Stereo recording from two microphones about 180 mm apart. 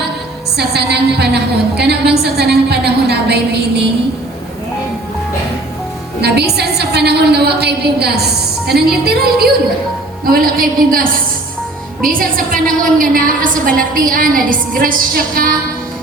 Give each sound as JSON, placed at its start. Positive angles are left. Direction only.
{"t": 0.5, "sound": "a woman's voice", "side_deg": -65}
{"t": 6.2, "sound": "a woman's voice", "side_deg": -65}
{"t": 12.1, "sound": "a woman's voice", "side_deg": -50}